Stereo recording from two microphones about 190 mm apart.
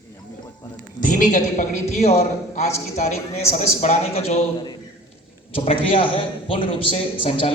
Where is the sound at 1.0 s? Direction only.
45° left (ahead or behind).